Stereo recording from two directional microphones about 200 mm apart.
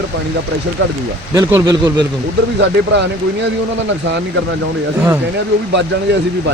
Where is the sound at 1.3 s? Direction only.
20° right (ahead or behind).